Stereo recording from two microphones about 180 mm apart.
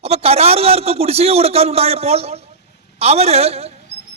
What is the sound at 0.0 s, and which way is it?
A man's voice, 35° right (ahead or behind).